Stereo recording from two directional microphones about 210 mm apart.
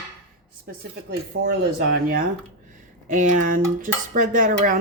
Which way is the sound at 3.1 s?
35° right (ahead or behind).